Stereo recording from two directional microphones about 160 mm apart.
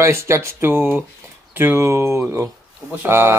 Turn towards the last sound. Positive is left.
turn(degrees=-15)  # may be behind; listen again after turning